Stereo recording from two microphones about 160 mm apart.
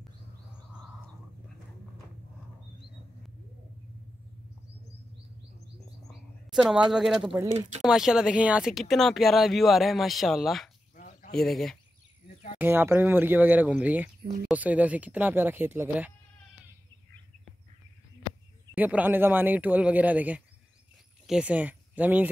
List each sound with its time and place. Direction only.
6.0 s bird: centre (ahead or behind)
7.8 s speech: centre (ahead or behind)
11.0 s a sound: 55° left (ahead or behind)
11.3 s speech: centre (ahead or behind)
12.5 s speech: 15° right (ahead or behind)
18.8 s speech: 10° right (ahead or behind)